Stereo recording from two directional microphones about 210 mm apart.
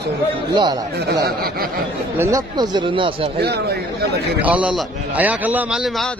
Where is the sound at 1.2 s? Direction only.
45° right (ahead or behind).